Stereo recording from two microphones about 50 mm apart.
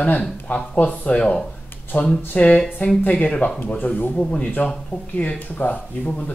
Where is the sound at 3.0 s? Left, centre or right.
Left.